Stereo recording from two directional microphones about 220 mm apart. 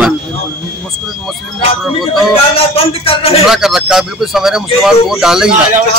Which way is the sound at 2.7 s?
25° left (ahead or behind).